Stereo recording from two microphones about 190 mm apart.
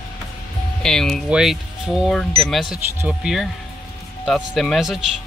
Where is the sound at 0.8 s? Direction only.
Centre (ahead or behind).